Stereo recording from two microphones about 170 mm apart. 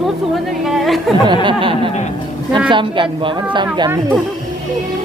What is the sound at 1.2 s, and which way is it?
A woman's voice, 30° right (ahead or behind).